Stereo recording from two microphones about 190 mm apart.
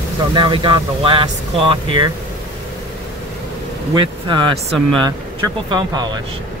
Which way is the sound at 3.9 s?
25° right (ahead or behind).